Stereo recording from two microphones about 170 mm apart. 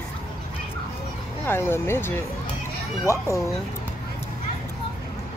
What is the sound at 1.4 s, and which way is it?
Speech, 15° left (ahead or behind).